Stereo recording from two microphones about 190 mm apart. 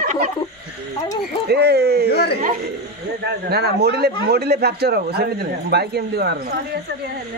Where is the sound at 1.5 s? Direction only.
60° right (ahead or behind).